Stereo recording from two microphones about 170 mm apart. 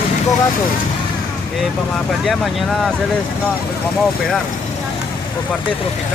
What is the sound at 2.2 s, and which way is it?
Speech, centre (ahead or behind).